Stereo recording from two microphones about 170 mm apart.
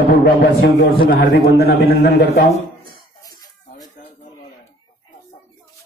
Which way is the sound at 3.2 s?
20° left (ahead or behind).